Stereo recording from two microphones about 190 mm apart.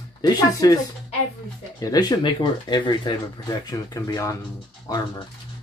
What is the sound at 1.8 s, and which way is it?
Speech, 20° left (ahead or behind).